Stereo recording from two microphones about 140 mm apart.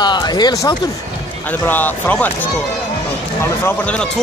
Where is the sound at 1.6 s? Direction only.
15° left (ahead or behind).